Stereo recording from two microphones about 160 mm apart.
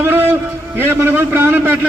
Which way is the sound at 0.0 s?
15° right (ahead or behind).